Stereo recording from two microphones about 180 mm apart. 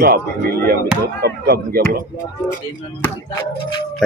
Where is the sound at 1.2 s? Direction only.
60° right (ahead or behind).